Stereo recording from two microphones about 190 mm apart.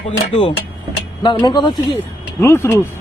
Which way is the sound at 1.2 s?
25° left (ahead or behind).